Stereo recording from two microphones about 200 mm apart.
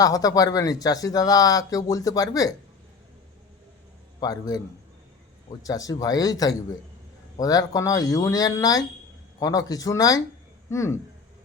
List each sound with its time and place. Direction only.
0.0 s speech: 20° left (ahead or behind)
4.2 s a man's voice: 20° left (ahead or behind)